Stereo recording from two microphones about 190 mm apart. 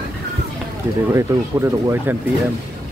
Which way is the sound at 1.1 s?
15° right (ahead or behind).